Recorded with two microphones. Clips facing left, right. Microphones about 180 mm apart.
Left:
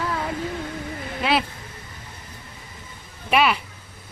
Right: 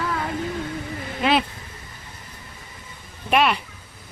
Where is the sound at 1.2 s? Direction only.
Centre (ahead or behind).